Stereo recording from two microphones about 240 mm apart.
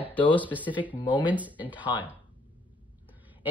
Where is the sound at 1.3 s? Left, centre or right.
Centre.